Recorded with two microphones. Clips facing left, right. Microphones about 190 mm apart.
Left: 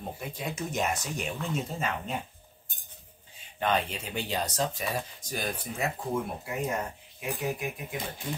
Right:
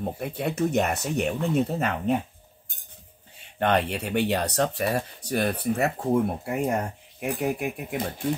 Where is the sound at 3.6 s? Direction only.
65° right (ahead or behind).